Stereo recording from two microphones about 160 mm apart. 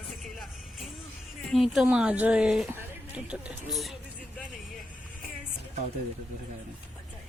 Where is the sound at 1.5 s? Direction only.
Centre (ahead or behind).